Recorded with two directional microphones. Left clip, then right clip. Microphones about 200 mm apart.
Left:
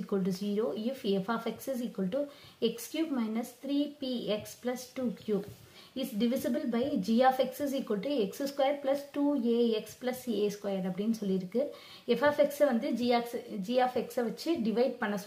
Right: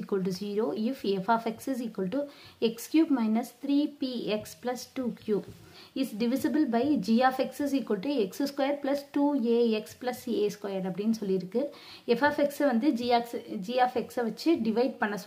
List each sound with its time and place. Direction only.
0.0 s a woman's voice: 40° right (ahead or behind)